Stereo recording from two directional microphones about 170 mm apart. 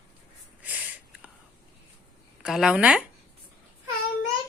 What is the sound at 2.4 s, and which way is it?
Speech, 5° right (ahead or behind).